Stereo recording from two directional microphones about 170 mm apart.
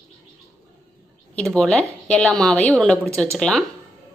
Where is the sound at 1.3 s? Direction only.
5° left (ahead or behind).